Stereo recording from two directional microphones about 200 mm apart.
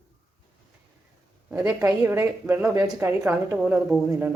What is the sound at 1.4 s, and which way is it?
Speech, 10° right (ahead or behind).